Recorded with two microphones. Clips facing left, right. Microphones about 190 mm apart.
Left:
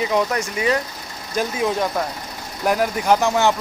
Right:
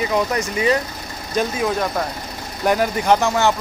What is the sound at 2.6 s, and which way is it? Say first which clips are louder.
Speech: right 1 dB; 5° left (ahead or behind).